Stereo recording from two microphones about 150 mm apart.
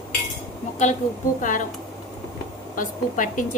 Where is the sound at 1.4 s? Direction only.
60° left (ahead or behind).